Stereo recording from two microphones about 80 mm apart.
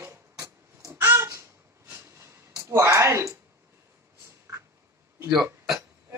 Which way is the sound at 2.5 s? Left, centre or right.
Right.